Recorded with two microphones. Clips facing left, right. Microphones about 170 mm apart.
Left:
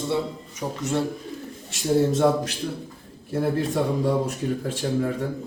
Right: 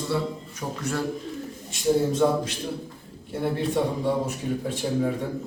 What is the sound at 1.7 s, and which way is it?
Speech, 90° left.